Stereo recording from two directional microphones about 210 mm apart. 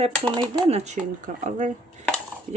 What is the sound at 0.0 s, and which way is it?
Speech, 30° right (ahead or behind).